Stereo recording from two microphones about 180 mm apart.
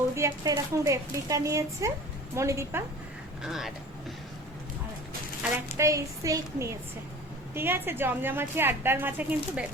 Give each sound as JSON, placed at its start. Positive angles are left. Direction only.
{"t": 0.1, "sound": "a woman's voice", "side_deg": -15}
{"t": 3.4, "sound": "speech", "side_deg": 0}
{"t": 5.7, "sound": "a woman's voice", "side_deg": -15}